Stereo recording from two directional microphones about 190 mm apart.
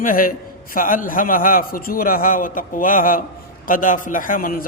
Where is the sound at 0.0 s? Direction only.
45° left (ahead or behind).